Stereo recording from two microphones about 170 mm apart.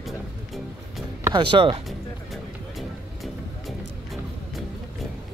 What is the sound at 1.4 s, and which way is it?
Speech, 30° right (ahead or behind).